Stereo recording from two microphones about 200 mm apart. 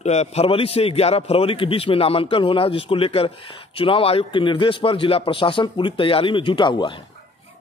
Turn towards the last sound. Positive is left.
turn(degrees=25)  # may be behind; listen again after turning